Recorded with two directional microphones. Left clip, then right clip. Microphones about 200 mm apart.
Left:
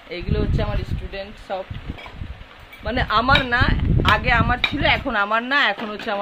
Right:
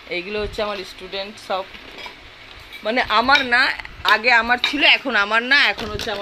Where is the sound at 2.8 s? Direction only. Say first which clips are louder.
Right 2 dB; centre (ahead or behind).